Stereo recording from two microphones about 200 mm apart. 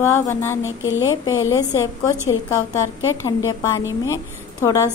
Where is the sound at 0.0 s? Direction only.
15° left (ahead or behind).